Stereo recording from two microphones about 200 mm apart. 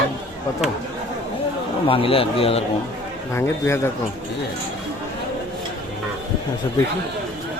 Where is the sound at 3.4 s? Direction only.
10° left (ahead or behind).